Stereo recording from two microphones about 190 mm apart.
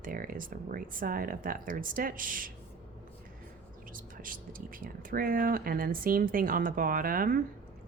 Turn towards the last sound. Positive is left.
turn(degrees=-50)  # may be behind; listen again after turning